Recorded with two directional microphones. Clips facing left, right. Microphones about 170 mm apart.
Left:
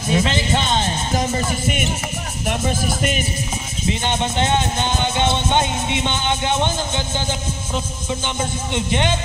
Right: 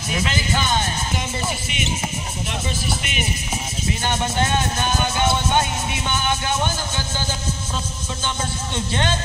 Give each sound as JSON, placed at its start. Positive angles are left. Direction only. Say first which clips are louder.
{"t": 0.1, "sound": "speech", "louder": "left 5 dB", "side_deg": 30}
{"t": 1.1, "sound": "music", "louder": "left 5 dB", "side_deg": 40}
{"t": 3.8, "sound": "music", "louder": "left 3 dB", "side_deg": 20}
{"t": 7.2, "sound": "a sound", "louder": "left 2 dB", "side_deg": 20}
{"t": 8.4, "sound": "a man's voice", "louder": "left 4 dB", "side_deg": 15}